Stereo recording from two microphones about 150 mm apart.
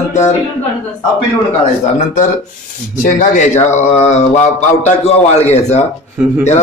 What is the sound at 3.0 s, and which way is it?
A man's voice, 55° left (ahead or behind).